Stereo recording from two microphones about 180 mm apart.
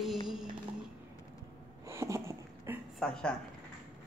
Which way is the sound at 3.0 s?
5° left (ahead or behind).